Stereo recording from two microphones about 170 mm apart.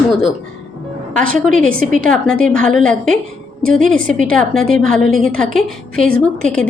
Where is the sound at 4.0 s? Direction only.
50° right (ahead or behind).